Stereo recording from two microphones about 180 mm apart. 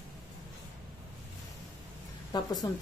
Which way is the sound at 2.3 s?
25° left (ahead or behind).